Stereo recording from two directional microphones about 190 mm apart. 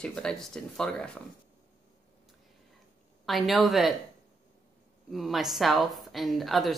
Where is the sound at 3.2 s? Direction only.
Centre (ahead or behind).